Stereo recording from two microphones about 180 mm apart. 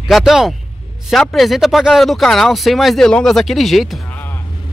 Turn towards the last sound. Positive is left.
turn(degrees=0)  # may be behind; listen again after turning